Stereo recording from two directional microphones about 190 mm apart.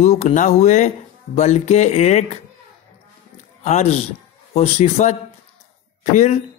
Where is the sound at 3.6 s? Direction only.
35° left (ahead or behind).